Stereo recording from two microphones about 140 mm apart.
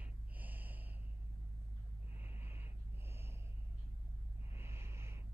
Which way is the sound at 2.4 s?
15° right (ahead or behind).